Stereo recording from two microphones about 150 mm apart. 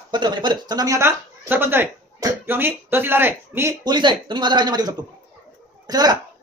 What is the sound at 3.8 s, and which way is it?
Speech, 30° right (ahead or behind).